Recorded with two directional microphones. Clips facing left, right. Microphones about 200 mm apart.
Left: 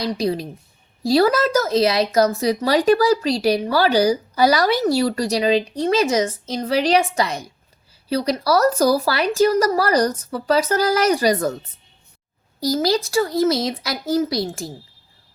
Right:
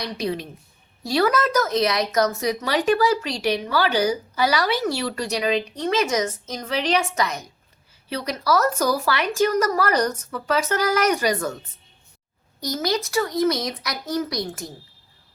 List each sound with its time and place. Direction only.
0.0 s speech: 35° left (ahead or behind)
12.5 s a child's voice: 30° left (ahead or behind)